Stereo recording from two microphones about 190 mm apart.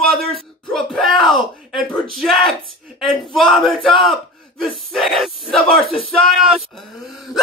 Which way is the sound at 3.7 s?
25° left (ahead or behind).